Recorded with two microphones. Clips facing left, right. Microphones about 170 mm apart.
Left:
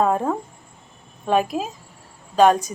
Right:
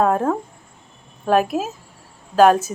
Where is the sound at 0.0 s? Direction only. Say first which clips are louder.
Right 2 dB; centre (ahead or behind).